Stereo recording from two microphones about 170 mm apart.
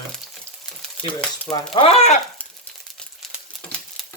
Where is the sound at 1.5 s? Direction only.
30° left (ahead or behind).